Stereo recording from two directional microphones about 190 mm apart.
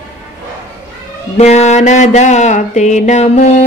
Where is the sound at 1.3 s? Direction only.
35° left (ahead or behind).